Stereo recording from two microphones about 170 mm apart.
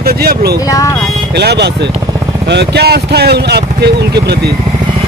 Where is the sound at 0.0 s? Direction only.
65° right (ahead or behind).